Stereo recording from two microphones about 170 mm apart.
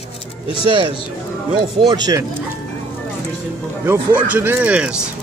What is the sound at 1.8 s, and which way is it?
Speech, 25° right (ahead or behind).